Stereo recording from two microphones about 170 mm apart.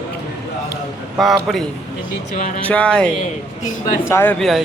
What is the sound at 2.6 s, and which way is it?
Speech, 10° left (ahead or behind).